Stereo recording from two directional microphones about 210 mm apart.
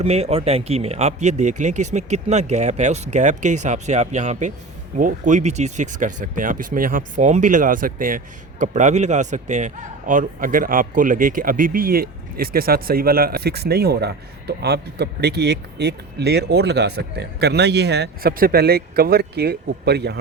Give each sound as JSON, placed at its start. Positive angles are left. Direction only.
{"t": 0.0, "sound": "speech", "side_deg": -30}